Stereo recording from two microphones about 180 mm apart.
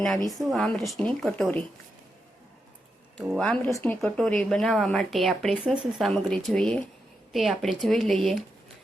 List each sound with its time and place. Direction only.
0.3 s speech: 5° left (ahead or behind)
3.2 s speech: 5° left (ahead or behind)
3.7 s speech: 15° left (ahead or behind)
4.0 s speech: 5° left (ahead or behind)